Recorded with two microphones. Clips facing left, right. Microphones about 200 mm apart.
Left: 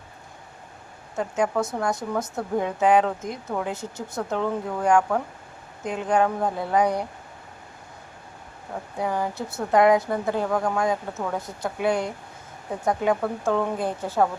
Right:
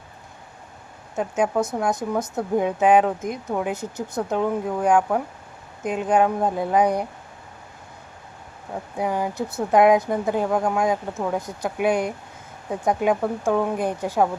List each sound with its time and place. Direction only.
1.1 s speech: 15° right (ahead or behind)
9.0 s speech: 15° right (ahead or behind)